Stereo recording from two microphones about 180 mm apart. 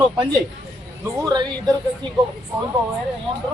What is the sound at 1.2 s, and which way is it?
Speech, 20° right (ahead or behind).